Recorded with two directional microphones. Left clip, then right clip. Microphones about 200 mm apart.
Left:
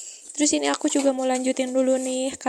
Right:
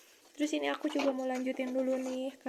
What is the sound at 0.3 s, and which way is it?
Speech, 40° left (ahead or behind).